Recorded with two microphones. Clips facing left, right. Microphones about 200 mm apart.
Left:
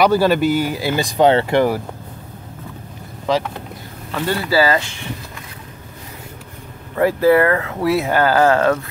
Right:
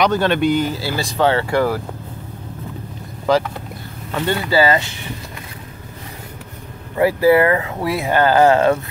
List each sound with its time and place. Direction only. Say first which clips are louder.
0.0 s speech: left 2 dB; 5° left (ahead or behind)
3.3 s speech: right 2 dB; centre (ahead or behind)
7.0 s speech: even; 10° right (ahead or behind)
7.8 s speech: left 2 dB; centre (ahead or behind)
8.2 s speech: right 4 dB; 20° right (ahead or behind)